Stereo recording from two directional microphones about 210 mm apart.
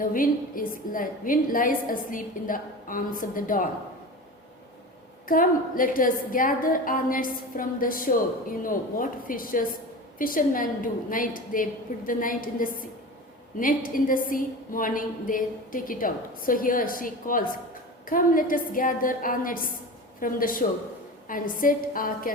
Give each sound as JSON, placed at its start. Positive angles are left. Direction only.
{"t": 0.0, "sound": "a woman's voice", "side_deg": 40}
{"t": 5.3, "sound": "a woman's voice", "side_deg": 40}